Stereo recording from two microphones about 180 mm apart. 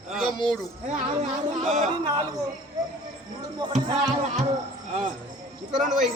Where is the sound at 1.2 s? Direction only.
40° right (ahead or behind).